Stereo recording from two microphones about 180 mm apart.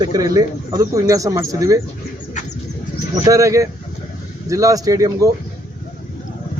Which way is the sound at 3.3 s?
15° right (ahead or behind).